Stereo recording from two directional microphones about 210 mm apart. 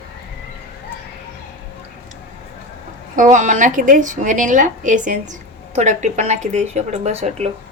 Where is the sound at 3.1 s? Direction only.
35° right (ahead or behind).